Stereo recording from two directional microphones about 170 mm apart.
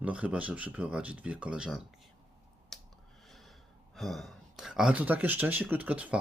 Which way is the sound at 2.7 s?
Centre (ahead or behind).